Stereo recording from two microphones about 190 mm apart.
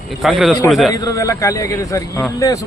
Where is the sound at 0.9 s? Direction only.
20° left (ahead or behind).